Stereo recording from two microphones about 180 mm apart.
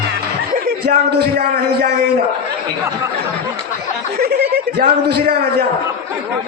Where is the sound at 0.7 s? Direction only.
60° right (ahead or behind).